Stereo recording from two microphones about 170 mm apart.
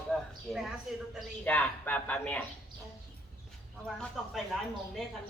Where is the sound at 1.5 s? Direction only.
10° left (ahead or behind).